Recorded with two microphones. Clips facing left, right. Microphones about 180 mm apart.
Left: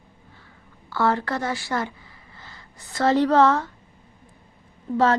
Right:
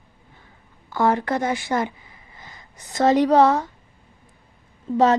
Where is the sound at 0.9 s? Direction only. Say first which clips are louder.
Right 2 dB; 20° right (ahead or behind).